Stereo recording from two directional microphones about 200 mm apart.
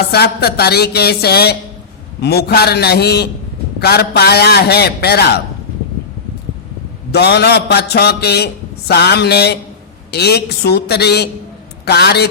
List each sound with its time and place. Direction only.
0.1 s a man's voice: 55° left (ahead or behind)
7.1 s a man's voice: 55° left (ahead or behind)